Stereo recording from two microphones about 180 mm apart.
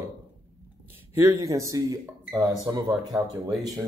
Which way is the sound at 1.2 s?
15° right (ahead or behind).